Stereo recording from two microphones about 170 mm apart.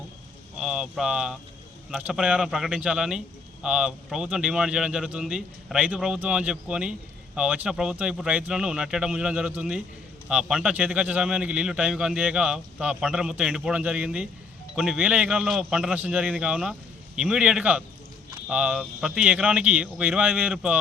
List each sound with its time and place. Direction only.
0.6 s a man's voice: 5° right (ahead or behind)